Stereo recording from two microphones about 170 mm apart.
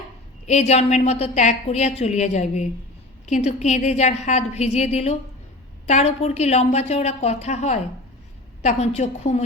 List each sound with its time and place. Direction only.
0.4 s a woman's voice: 40° left (ahead or behind)